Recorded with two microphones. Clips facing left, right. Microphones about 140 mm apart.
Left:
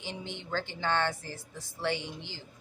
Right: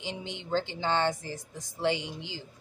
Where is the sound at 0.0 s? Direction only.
15° right (ahead or behind).